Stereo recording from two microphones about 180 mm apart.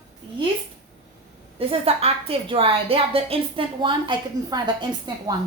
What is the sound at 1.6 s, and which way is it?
A woman's voice, 30° right (ahead or behind).